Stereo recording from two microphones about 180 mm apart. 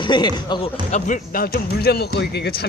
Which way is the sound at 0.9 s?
50° left (ahead or behind).